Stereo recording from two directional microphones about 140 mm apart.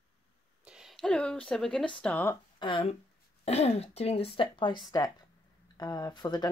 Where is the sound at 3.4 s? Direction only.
50° left (ahead or behind).